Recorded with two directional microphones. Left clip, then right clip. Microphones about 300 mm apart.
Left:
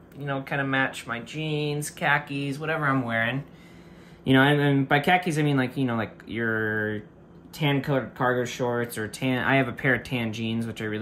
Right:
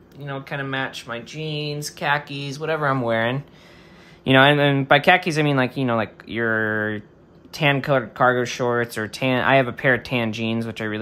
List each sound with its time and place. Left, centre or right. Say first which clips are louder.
0.2 s speech: left 1 dB; centre